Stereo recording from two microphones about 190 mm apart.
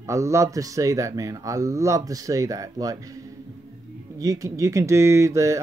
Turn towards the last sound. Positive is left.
turn(degrees=-15)  # may be behind; listen again after turning